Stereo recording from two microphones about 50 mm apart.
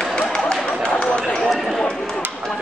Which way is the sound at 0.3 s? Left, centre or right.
Centre.